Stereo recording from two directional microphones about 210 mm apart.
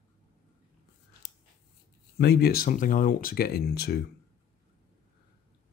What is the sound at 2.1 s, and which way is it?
Speech, 50° left (ahead or behind).